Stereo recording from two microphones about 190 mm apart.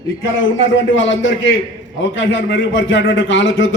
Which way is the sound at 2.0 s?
80° left.